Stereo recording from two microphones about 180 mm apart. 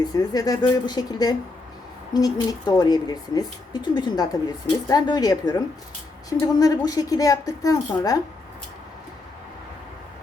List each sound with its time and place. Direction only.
0.0 s speech: 20° left (ahead or behind)